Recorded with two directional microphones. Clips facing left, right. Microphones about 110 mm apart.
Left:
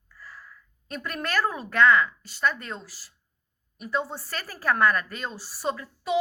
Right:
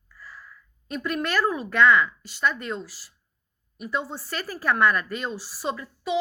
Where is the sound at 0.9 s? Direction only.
40° left (ahead or behind).